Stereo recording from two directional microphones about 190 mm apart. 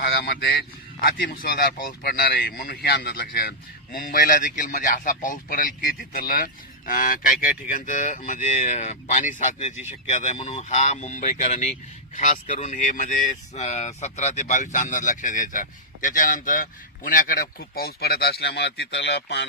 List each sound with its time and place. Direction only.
0.0 s speech: 55° left (ahead or behind)